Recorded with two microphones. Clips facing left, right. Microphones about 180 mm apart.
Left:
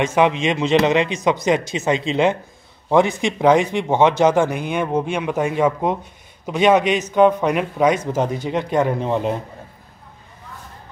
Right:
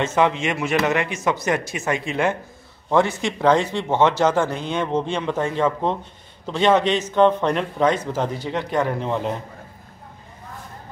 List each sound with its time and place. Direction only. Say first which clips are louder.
0.0 s speech: left 3 dB; 15° left (ahead or behind)